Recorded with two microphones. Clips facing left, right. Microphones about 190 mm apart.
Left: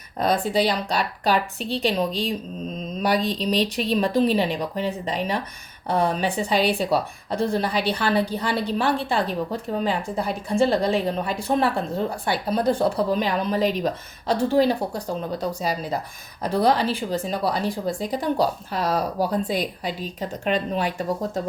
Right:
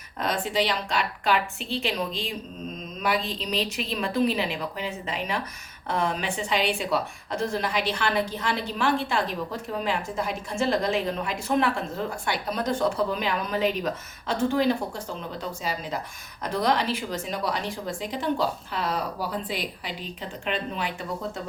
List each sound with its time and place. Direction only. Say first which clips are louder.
0.2 s speech: left 5 dB; 40° left (ahead or behind)
3.0 s mantra: left 4 dB; 35° left (ahead or behind)
4.0 s speech: left 3 dB; 35° left (ahead or behind)